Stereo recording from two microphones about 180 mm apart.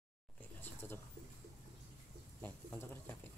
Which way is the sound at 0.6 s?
10° left (ahead or behind).